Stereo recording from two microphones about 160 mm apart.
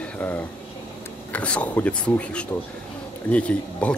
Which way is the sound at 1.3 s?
10° left (ahead or behind).